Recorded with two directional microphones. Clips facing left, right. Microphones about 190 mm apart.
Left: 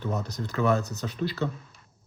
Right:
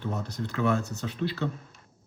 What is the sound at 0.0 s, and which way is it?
Speech, 40° left (ahead or behind).